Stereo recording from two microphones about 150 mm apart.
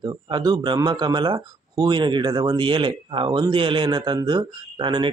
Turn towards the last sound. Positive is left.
turn(degrees=-30)  # may be behind; listen again after turning